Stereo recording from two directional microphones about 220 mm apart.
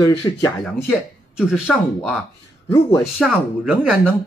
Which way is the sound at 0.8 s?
5° right (ahead or behind).